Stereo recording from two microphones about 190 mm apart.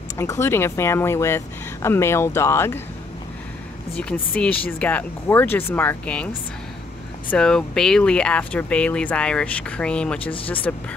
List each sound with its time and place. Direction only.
0.2 s speech: 15° left (ahead or behind)
3.9 s speech: 5° left (ahead or behind)
10.3 s speech: 30° left (ahead or behind)